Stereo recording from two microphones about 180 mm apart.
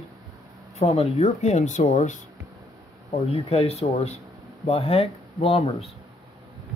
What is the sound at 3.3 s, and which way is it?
Speech, 35° left (ahead or behind).